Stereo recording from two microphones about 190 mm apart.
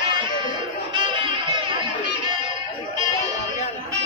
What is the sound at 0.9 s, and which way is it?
Music, 25° right (ahead or behind).